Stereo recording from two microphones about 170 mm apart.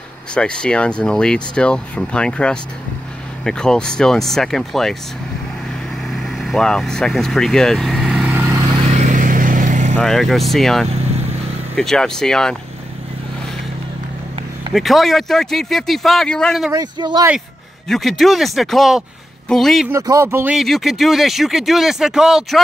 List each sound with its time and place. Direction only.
0.3 s speech: 5° left (ahead or behind)
6.1 s vehicle: centre (ahead or behind); by 8.6 s 15° right (ahead or behind)
8.9 s vehicle: 50° right (ahead or behind)
9.9 s speech: centre (ahead or behind)
14.7 s speech: centre (ahead or behind)
16.7 s speech: 25° right (ahead or behind)
17.8 s speech: centre (ahead or behind)
19.9 s speech: 15° right (ahead or behind)
20.5 s speech: centre (ahead or behind)